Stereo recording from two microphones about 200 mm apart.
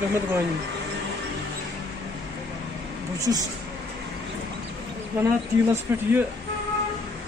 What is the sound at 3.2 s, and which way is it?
Speech, 15° right (ahead or behind).